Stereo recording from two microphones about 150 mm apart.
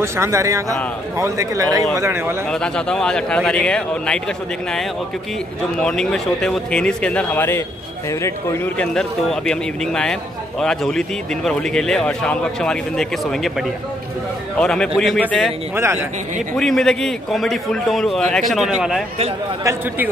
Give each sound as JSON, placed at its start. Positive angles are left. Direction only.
{"t": 0.0, "sound": "a man's voice", "side_deg": -20}
{"t": 2.5, "sound": "a man's voice", "side_deg": 5}
{"t": 5.8, "sound": "speech", "side_deg": 5}
{"t": 8.7, "sound": "a man's voice", "side_deg": 5}
{"t": 15.7, "sound": "a man's voice", "side_deg": -15}
{"t": 16.5, "sound": "a man's voice", "side_deg": 5}
{"t": 19.6, "sound": "a man's voice", "side_deg": -20}